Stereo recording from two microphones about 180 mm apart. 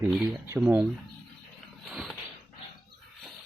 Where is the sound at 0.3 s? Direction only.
10° right (ahead or behind).